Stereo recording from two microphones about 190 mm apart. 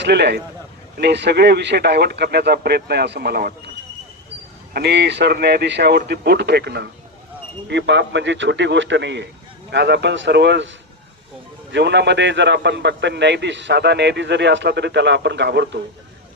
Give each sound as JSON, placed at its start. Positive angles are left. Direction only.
{"t": 0.0, "sound": "speech", "side_deg": -60}
{"t": 4.7, "sound": "a man's voice", "side_deg": -60}
{"t": 11.7, "sound": "a man's voice", "side_deg": -65}